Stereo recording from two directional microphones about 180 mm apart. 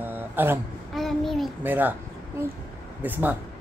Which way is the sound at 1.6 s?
10° right (ahead or behind).